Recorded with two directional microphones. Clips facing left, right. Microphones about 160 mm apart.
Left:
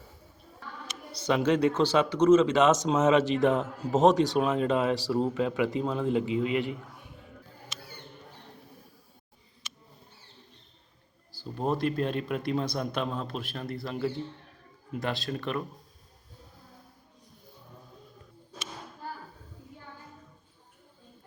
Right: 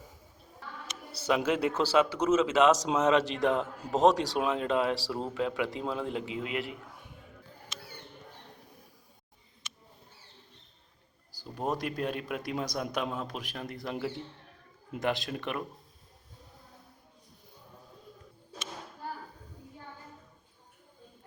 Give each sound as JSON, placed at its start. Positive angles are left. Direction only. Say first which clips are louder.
{"t": 1.2, "sound": "speech", "louder": "left 3 dB", "side_deg": -5}
{"t": 7.7, "sound": "mouse", "louder": "even", "side_deg": 10}
{"t": 9.6, "sound": "a sound", "louder": "left 1 dB", "side_deg": 10}
{"t": 11.3, "sound": "a man's voice", "louder": "left 4 dB", "side_deg": -10}